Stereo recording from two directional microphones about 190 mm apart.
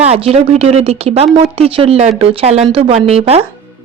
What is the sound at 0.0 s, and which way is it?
Speech, 30° right (ahead or behind).